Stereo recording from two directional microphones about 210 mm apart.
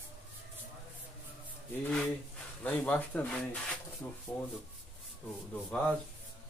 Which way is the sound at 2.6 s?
10° left (ahead or behind).